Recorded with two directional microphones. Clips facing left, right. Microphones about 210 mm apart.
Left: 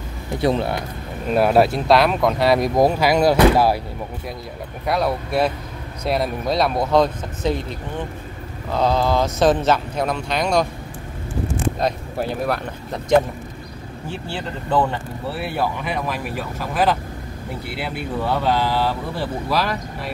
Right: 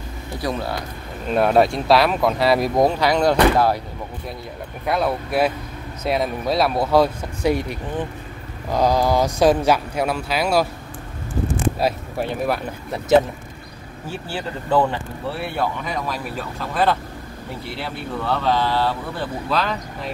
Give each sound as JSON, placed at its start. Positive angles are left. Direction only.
{"t": 0.4, "sound": "speech", "side_deg": 25}
{"t": 1.3, "sound": "speech", "side_deg": 5}
{"t": 4.8, "sound": "speech", "side_deg": 0}
{"t": 8.7, "sound": "speech", "side_deg": -10}
{"t": 11.8, "sound": "speech", "side_deg": -5}
{"t": 14.7, "sound": "speech", "side_deg": -5}